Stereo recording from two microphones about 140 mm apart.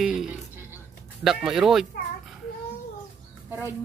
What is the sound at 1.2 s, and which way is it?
Turkey, 5° right (ahead or behind).